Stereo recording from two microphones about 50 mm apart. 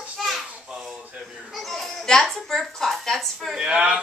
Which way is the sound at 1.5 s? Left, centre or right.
Centre.